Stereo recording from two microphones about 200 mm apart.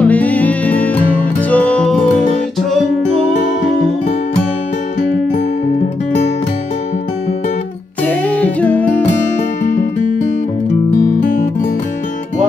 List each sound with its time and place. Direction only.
0.0 s music: 5° left (ahead or behind)
8.0 s music: 5° left (ahead or behind)
10.7 s music: 35° left (ahead or behind)